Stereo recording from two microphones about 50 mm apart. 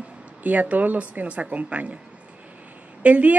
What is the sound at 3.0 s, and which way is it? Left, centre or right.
Speech, right.